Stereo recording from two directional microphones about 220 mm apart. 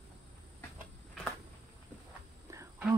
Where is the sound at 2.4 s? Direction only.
15° right (ahead or behind).